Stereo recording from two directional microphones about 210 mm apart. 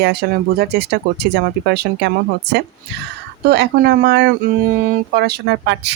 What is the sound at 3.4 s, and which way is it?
Speech, 55° right (ahead or behind).